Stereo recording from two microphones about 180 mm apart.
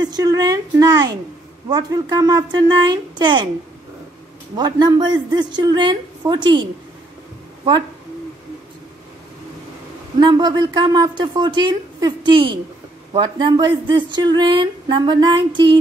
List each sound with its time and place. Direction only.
0.0 s speech: 20° right (ahead or behind)
4.6 s speech: 25° right (ahead or behind)
10.2 s speech: 25° right (ahead or behind)